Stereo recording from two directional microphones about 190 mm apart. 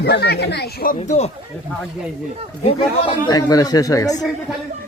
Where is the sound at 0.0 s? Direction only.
60° left (ahead or behind).